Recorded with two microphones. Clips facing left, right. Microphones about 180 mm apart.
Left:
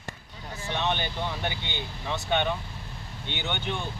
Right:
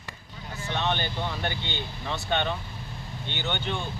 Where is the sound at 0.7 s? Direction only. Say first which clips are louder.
Even; 15° left (ahead or behind).